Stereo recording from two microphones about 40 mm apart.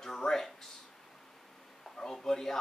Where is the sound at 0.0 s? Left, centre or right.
Centre.